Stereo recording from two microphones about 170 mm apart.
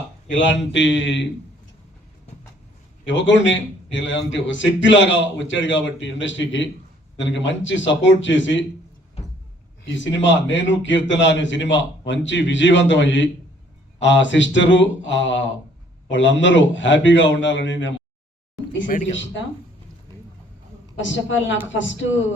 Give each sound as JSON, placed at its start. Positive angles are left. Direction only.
{"t": 0.3, "sound": "a man's voice", "side_deg": 90}
{"t": 3.1, "sound": "a man's voice", "side_deg": 90}
{"t": 9.8, "sound": "a man's voice", "side_deg": 90}
{"t": 18.9, "sound": "speech", "side_deg": 50}
{"t": 20.9, "sound": "a man's voice", "side_deg": 90}